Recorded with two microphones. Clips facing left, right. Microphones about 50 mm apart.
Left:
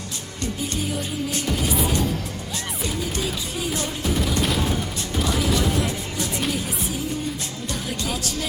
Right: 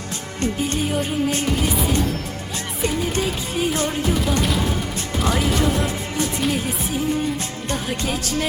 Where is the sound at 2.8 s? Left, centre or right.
Right.